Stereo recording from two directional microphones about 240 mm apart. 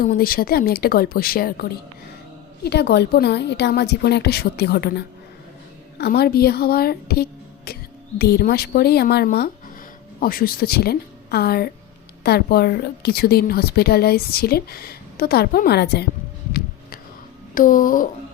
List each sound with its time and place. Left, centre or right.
0.0 s a woman's voice: left
2.6 s a woman's voice: left
16.5 s a sound: left
17.5 s a woman's voice: left